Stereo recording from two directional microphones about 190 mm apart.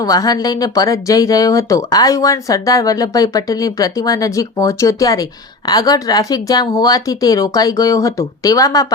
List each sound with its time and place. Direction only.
0.0 s speech: 20° left (ahead or behind)